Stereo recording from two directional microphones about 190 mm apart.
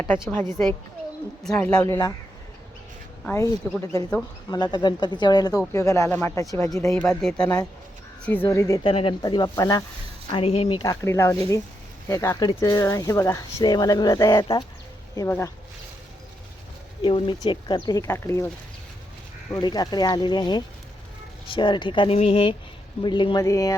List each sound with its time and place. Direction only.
0.0 s speech: 5° left (ahead or behind)
3.2 s speech: 15° left (ahead or behind)
6.9 s speech: 5° left (ahead or behind)
8.8 s speech: 30° left (ahead or behind)
10.3 s speech: 30° left (ahead or behind)
11.0 s speech: 15° left (ahead or behind)
17.0 s speech: 25° left (ahead or behind)
19.5 s speech: 20° left (ahead or behind)